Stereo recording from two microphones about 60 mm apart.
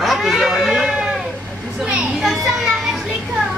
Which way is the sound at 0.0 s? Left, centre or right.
Centre.